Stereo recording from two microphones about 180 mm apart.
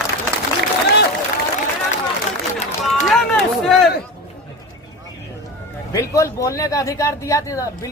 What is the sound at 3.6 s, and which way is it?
Speech, centre (ahead or behind).